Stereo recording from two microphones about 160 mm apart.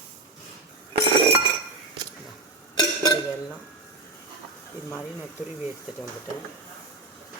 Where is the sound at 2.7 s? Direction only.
25° left (ahead or behind).